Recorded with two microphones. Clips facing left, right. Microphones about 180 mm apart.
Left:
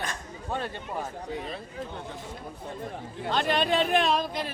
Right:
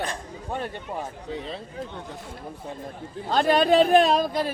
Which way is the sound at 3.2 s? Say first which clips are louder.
Right 6 dB; 40° right (ahead or behind).